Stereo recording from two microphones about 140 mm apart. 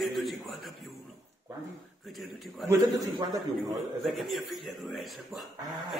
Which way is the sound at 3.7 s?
Centre (ahead or behind).